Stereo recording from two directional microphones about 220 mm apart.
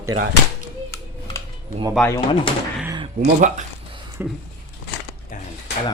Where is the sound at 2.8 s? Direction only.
20° right (ahead or behind).